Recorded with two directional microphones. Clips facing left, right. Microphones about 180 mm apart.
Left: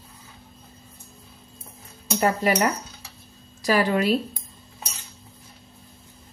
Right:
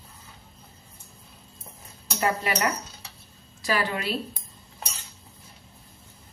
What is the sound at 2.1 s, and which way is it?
A woman's voice, 45° left (ahead or behind).